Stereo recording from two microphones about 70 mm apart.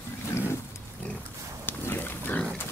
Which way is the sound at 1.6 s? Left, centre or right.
Left.